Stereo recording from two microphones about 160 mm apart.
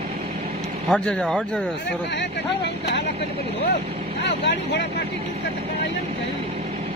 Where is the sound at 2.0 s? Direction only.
90° left.